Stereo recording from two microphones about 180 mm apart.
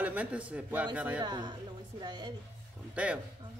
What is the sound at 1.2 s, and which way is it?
A woman's voice, 25° right (ahead or behind).